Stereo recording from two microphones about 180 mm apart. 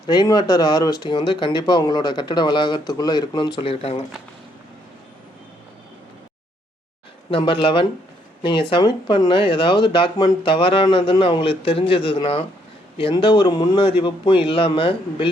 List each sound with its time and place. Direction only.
0.1 s speech: 25° left (ahead or behind)
7.3 s speech: 30° left (ahead or behind)